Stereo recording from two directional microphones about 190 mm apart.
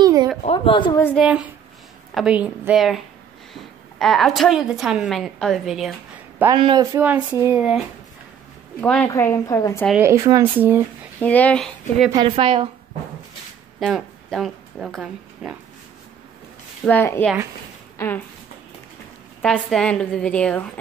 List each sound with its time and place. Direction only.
0.0 s a sound: 20° right (ahead or behind)
0.4 s a woman's voice: 30° left (ahead or behind)
1.1 s a woman's voice: 5° right (ahead or behind)
4.0 s a woman's voice: centre (ahead or behind)
6.5 s speech: 25° right (ahead or behind); by 7.8 s 5° right (ahead or behind)
8.8 s a woman's voice: 5° left (ahead or behind)
10.0 s speech: 15° right (ahead or behind)
11.1 s speech: 10° left (ahead or behind)
12.1 s a woman's voice: 25° right (ahead or behind)
13.7 s speech: centre (ahead or behind)
16.8 s speech: 10° left (ahead or behind)
19.4 s a woman's voice: 5° left (ahead or behind)